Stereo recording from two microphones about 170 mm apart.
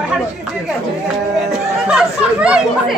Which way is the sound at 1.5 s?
5° right (ahead or behind).